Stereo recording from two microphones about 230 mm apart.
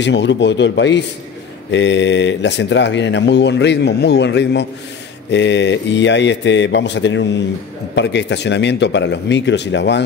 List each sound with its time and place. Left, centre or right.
0.0 s speech: left